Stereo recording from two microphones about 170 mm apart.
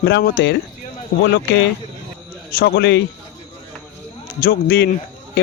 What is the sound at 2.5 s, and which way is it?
Speech, 75° left (ahead or behind).